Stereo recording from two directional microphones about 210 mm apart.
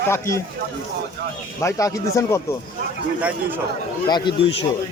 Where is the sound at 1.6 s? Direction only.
15° left (ahead or behind).